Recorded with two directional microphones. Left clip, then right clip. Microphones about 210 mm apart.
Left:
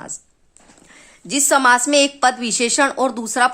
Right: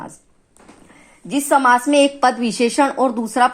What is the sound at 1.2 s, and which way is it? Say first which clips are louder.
Speech: even; 25° left (ahead or behind).